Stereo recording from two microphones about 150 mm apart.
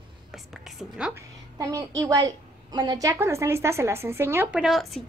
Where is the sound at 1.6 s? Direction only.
25° right (ahead or behind).